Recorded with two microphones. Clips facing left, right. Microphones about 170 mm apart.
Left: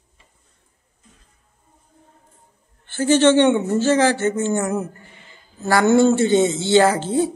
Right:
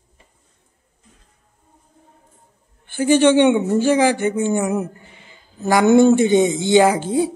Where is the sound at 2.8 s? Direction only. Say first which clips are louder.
Right 1 dB; 15° right (ahead or behind).